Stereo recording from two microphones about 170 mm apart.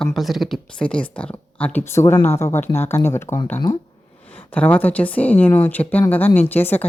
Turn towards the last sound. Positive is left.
turn(degrees=10)  # may be behind; listen again after turning